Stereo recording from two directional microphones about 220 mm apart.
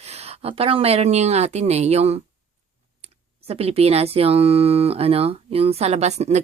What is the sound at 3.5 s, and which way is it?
A woman's voice, 25° right (ahead or behind).